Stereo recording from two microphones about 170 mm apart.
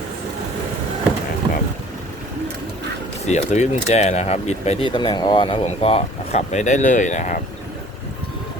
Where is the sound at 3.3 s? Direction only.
40° left (ahead or behind).